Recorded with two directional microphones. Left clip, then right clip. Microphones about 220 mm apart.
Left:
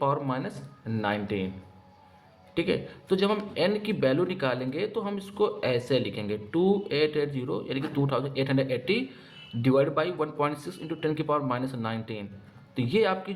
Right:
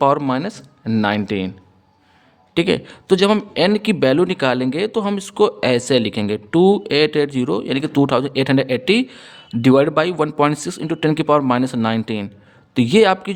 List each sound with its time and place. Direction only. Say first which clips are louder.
0.0 s a man's voice: right 12 dB; 55° right (ahead or behind)
2.6 s a man's voice: right 10 dB; 55° right (ahead or behind)